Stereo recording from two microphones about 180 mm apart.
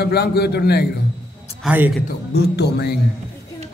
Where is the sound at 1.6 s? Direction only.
10° right (ahead or behind).